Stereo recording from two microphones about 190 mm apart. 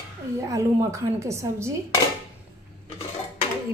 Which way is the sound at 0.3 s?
15° right (ahead or behind).